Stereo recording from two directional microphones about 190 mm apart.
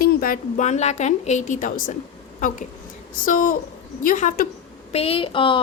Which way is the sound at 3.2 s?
45° left (ahead or behind).